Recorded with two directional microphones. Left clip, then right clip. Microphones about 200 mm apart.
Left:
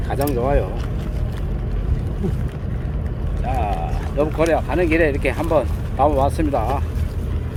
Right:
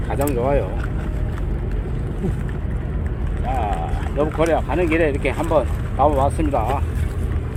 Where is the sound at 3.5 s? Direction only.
10° left (ahead or behind).